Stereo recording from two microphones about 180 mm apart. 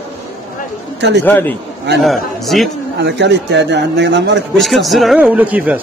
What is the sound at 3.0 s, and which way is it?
Speech, 70° right (ahead or behind).